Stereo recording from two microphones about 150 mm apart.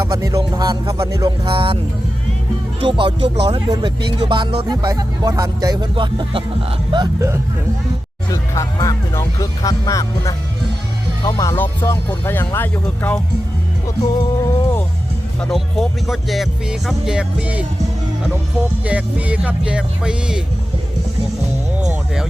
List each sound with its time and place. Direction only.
0.0 s speech: 25° right (ahead or behind)
2.8 s speech: 35° right (ahead or behind)
8.3 s speech: 20° left (ahead or behind)
14.4 s music: 15° left (ahead or behind)
15.4 s speech: 5° left (ahead or behind)
18.9 s speech: 10° right (ahead or behind)